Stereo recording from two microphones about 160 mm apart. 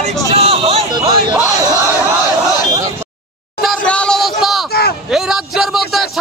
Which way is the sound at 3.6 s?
5° left (ahead or behind).